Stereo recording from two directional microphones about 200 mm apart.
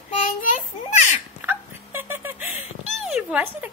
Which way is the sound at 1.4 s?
10° right (ahead or behind).